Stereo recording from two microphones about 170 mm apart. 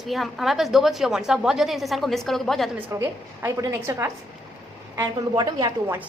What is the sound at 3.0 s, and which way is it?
A woman's voice, 15° right (ahead or behind).